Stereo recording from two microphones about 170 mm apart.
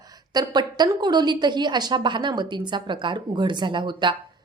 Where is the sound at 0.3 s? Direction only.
25° right (ahead or behind).